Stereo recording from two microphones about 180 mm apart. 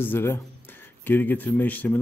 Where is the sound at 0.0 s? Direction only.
15° left (ahead or behind).